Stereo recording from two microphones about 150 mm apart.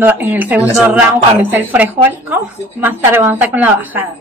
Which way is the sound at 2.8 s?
15° right (ahead or behind).